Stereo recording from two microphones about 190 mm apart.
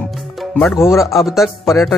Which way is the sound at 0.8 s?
15° left (ahead or behind).